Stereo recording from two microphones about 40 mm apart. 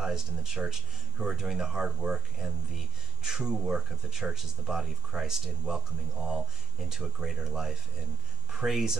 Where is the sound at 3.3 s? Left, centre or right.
Centre.